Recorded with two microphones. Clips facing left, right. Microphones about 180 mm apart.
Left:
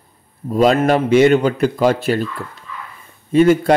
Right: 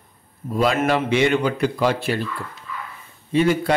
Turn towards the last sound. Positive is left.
turn(degrees=45)  # may be behind; listen again after turning